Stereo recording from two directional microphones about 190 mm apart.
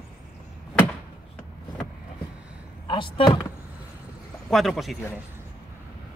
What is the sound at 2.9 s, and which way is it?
Speech, 25° left (ahead or behind).